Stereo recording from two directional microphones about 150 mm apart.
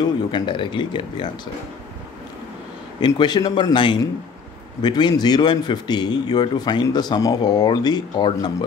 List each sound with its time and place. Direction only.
0.0 s speech: 30° left (ahead or behind)
3.0 s speech: 30° left (ahead or behind)